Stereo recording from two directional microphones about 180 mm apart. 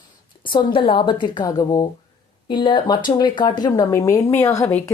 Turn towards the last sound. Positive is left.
turn(degrees=10)  # may be behind; listen again after turning